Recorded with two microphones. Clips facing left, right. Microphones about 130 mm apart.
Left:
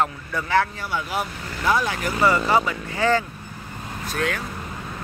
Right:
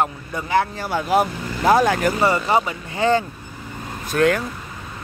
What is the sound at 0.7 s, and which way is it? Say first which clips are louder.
Speech: right 8 dB; 40° right (ahead or behind).